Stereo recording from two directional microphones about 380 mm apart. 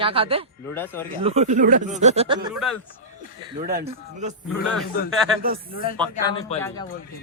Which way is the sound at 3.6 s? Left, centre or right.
Right.